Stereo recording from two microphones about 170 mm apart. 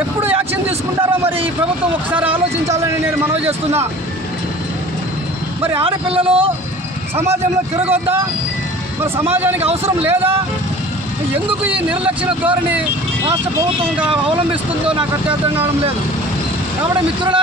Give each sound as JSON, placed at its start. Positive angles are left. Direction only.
{"t": 2.0, "sound": "speech", "side_deg": -10}
{"t": 5.8, "sound": "a man's voice", "side_deg": -30}
{"t": 7.8, "sound": "speech", "side_deg": -15}
{"t": 11.6, "sound": "speech", "side_deg": -10}
{"t": 14.5, "sound": "speech", "side_deg": -10}